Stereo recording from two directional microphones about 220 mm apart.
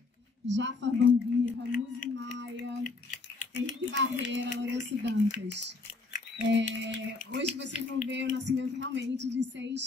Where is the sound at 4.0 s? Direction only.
55° right (ahead or behind).